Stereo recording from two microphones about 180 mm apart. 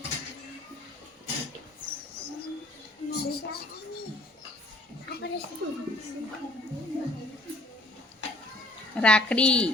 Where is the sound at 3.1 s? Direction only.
60° left (ahead or behind).